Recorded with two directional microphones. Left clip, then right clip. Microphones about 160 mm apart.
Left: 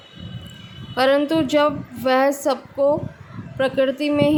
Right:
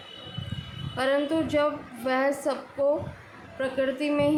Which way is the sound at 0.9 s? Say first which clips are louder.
Left 8 dB; 60° left (ahead or behind).